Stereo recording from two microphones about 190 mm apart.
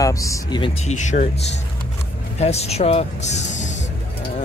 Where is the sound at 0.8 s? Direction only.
40° left (ahead or behind).